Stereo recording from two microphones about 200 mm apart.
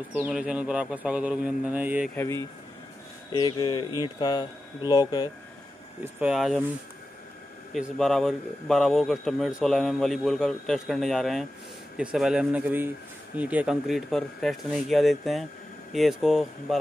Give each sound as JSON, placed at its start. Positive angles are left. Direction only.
{"t": 0.1, "sound": "a man's voice", "side_deg": -5}
{"t": 2.1, "sound": "speech", "side_deg": 15}
{"t": 6.0, "sound": "a man's voice", "side_deg": -5}
{"t": 7.7, "sound": "a man's voice", "side_deg": 0}